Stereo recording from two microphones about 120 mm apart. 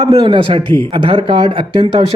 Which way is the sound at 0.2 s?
45° right (ahead or behind).